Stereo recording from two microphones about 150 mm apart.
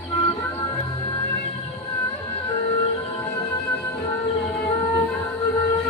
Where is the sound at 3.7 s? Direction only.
15° left (ahead or behind).